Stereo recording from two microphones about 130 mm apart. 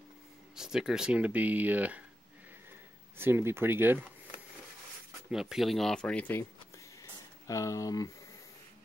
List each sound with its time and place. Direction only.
0.6 s speech: 5° right (ahead or behind)
3.2 s speech: 15° right (ahead or behind)
5.3 s speech: 5° right (ahead or behind); by 6.4 s 10° left (ahead or behind)
7.0 s a sound: 25° left (ahead or behind)